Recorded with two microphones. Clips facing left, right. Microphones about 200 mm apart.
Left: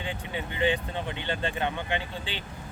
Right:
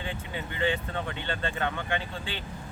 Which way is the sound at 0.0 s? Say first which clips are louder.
Left 1 dB; 20° left (ahead or behind).